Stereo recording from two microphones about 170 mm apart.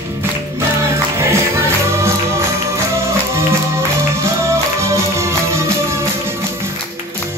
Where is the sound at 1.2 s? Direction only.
15° right (ahead or behind).